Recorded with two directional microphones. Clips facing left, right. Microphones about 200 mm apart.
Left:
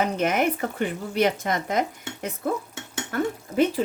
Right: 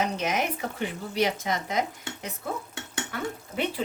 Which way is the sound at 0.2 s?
55° left (ahead or behind).